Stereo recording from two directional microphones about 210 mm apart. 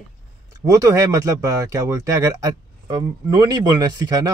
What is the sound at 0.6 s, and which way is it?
Speech, 15° right (ahead or behind).